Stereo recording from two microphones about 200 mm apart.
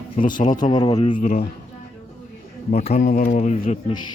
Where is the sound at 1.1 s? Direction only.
40° left (ahead or behind).